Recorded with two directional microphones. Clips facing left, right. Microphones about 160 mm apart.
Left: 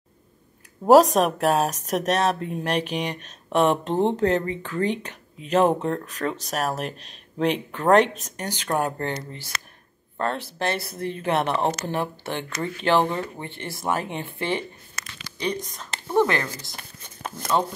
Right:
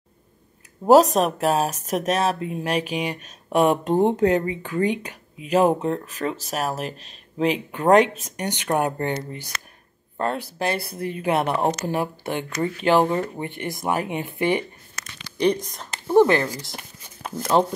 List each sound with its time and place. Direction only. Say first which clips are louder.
0.8 s speech: even; centre (ahead or behind); by 9.2 s 20° right (ahead or behind)
10.2 s speech: right 1 dB; 10° right (ahead or behind)
15.9 s a sound: right 5 dB; 10° right (ahead or behind)
16.4 s speech: right 5 dB; 10° right (ahead or behind)